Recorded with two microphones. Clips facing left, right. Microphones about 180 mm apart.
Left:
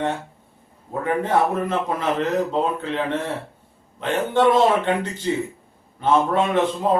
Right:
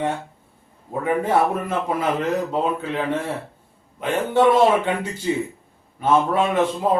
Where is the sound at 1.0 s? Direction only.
10° right (ahead or behind).